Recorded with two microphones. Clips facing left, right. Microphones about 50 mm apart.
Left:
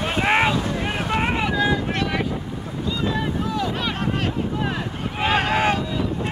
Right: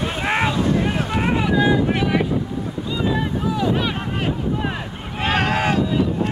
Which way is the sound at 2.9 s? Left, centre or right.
Centre.